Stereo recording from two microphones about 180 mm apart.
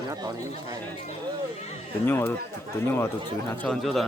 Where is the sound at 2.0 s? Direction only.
15° left (ahead or behind).